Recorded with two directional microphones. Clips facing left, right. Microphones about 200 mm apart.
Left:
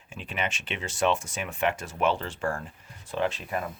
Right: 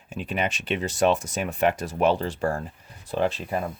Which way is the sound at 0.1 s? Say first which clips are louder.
Right 5 dB; 40° right (ahead or behind).